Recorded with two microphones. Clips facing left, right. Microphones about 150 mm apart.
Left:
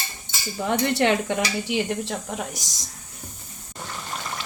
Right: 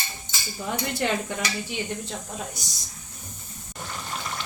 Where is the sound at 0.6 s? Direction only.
70° left (ahead or behind); by 2.1 s 85° left.